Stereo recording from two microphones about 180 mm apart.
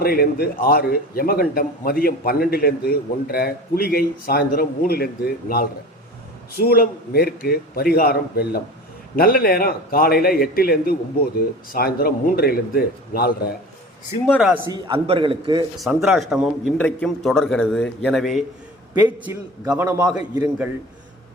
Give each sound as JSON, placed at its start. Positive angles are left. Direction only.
{"t": 0.0, "sound": "a man's voice", "side_deg": 55}
{"t": 14.3, "sound": "a man's voice", "side_deg": -10}
{"t": 14.7, "sound": "a man's voice", "side_deg": -30}
{"t": 15.8, "sound": "a man's voice", "side_deg": 0}
{"t": 18.9, "sound": "a man's voice", "side_deg": -10}